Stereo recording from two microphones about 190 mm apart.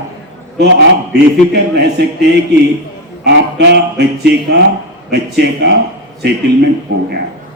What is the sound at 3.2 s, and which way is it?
A man's voice, 60° right (ahead or behind).